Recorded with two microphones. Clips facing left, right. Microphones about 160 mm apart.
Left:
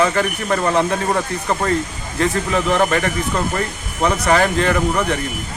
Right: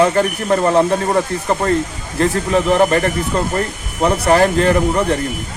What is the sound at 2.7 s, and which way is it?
Speech, 35° right (ahead or behind).